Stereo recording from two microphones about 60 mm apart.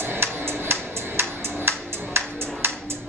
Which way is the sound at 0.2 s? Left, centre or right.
Right.